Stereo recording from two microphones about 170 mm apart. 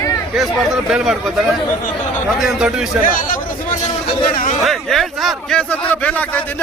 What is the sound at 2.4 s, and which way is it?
Speech, centre (ahead or behind).